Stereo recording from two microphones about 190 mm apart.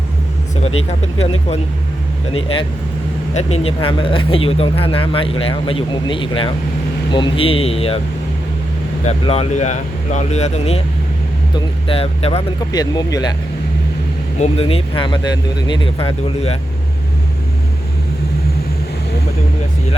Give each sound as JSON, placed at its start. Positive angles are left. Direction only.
{"t": 0.5, "sound": "speech", "side_deg": 35}
{"t": 2.3, "sound": "speech", "side_deg": 30}
{"t": 9.0, "sound": "speech", "side_deg": 35}
{"t": 12.7, "sound": "speech", "side_deg": 20}
{"t": 14.3, "sound": "speech", "side_deg": 35}